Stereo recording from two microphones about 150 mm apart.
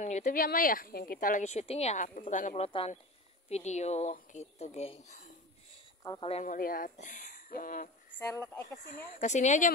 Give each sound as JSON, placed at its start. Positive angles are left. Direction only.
{"t": 0.0, "sound": "speech", "side_deg": 55}
{"t": 2.5, "sound": "speech", "side_deg": 40}
{"t": 6.0, "sound": "speech", "side_deg": 25}
{"t": 6.4, "sound": "speech", "side_deg": 60}
{"t": 8.2, "sound": "speech", "side_deg": 20}
{"t": 8.8, "sound": "speech", "side_deg": 50}